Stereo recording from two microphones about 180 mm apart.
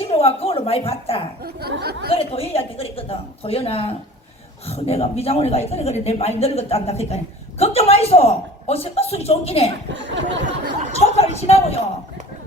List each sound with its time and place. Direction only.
0.2 s speech: 35° left (ahead or behind)
1.5 s speech: 60° right (ahead or behind)
2.1 s speech: 35° left (ahead or behind)
9.9 s chatter: 90° right
10.9 s a sound: 35° left (ahead or behind)
11.3 s speech: 35° left (ahead or behind)